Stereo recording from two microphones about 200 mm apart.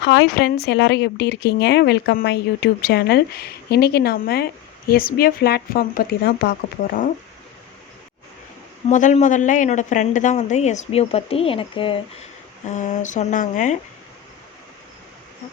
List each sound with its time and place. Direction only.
0.0 s speech: 60° left (ahead or behind)
8.9 s speech: 40° left (ahead or behind)
12.6 s speech: 35° left (ahead or behind)